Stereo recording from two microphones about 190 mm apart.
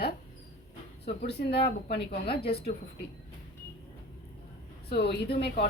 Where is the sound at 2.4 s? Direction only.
55° left (ahead or behind).